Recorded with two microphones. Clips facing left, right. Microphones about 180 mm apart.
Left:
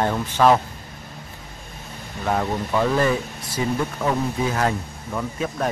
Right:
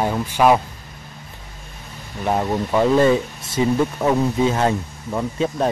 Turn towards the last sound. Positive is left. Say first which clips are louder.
# right 4 dB
turn(degrees=-25)  # may be behind; listen again after turning